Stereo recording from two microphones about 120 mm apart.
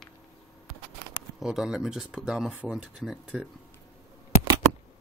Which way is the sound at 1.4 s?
5° right (ahead or behind).